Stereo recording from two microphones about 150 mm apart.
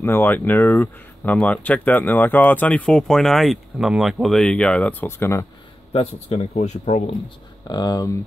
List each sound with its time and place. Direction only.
0.0 s speech: 15° left (ahead or behind)
5.9 s speech: 40° left (ahead or behind)
7.6 s speech: 25° left (ahead or behind)